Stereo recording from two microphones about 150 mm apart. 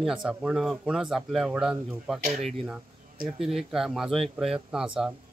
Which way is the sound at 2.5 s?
Centre (ahead or behind).